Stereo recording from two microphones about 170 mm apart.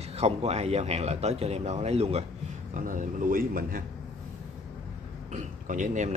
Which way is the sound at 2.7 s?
50° right (ahead or behind).